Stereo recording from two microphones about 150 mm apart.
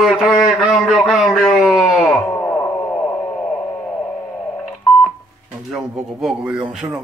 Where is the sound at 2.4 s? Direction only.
15° left (ahead or behind).